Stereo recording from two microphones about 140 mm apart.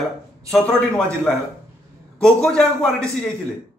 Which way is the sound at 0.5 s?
5° left (ahead or behind).